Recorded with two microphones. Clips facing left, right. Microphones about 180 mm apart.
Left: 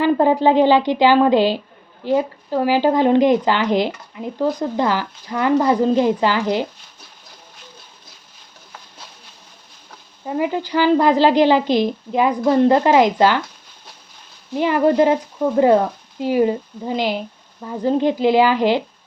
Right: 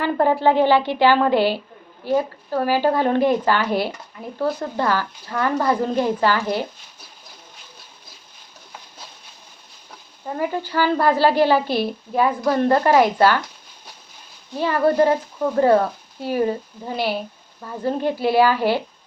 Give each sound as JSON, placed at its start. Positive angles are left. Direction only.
{"t": 0.0, "sound": "speech", "side_deg": 20}
{"t": 10.2, "sound": "speech", "side_deg": 15}
{"t": 14.5, "sound": "speech", "side_deg": 15}